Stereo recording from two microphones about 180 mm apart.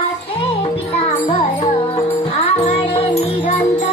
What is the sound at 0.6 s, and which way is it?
Music, 35° left (ahead or behind).